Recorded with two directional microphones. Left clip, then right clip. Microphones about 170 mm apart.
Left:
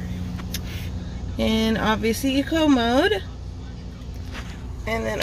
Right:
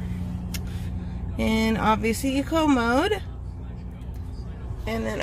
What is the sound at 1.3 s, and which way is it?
Speech, 20° right (ahead or behind).